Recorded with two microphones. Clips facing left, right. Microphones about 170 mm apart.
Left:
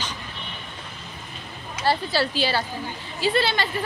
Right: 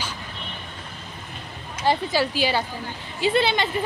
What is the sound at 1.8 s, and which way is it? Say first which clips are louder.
A woman's voice: right 1 dB; 15° right (ahead or behind).